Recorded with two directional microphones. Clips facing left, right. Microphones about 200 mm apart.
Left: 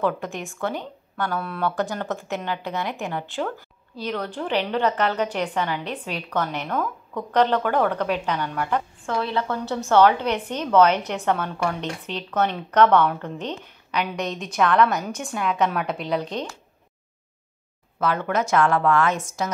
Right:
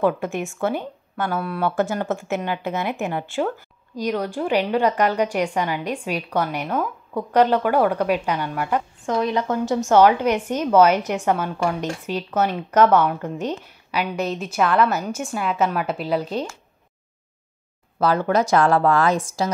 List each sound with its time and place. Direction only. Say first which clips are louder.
0.6 s a woman's voice: right 2 dB; 10° right (ahead or behind)
17.9 s a woman's voice: right 4 dB; 35° right (ahead or behind)